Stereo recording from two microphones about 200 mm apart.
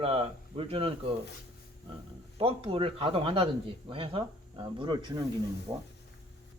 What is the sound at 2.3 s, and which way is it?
Speech, 30° right (ahead or behind).